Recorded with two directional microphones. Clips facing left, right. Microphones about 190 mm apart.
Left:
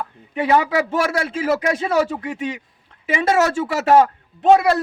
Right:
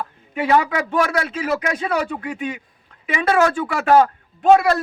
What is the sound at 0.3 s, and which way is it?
A man's voice, 20° left (ahead or behind).